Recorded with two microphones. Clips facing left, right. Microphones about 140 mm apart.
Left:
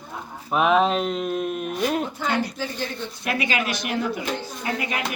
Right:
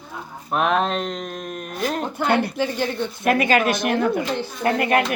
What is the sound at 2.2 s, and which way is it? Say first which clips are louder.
Speech: right 5 dB; 60° right (ahead or behind).